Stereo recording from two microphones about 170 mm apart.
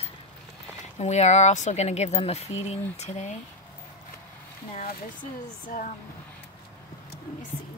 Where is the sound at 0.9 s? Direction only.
40° left (ahead or behind).